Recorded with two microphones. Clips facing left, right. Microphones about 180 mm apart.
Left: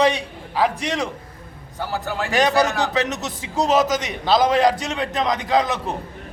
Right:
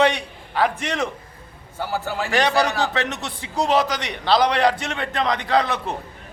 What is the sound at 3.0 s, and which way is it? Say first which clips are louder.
A man's voice: left 2 dB; 40° left (ahead or behind).